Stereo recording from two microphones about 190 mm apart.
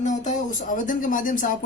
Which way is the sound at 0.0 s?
40° left (ahead or behind).